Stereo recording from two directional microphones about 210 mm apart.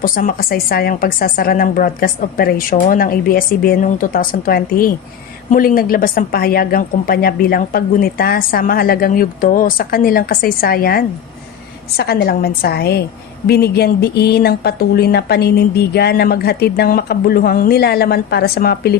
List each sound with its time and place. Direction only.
0.0 s a woman's voice: 40° left (ahead or behind)